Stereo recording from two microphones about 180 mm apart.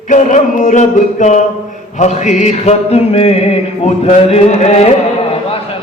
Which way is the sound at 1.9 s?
40° left (ahead or behind).